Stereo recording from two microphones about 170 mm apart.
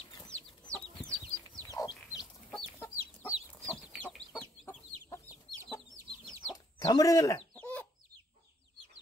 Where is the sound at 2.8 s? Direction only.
15° left (ahead or behind).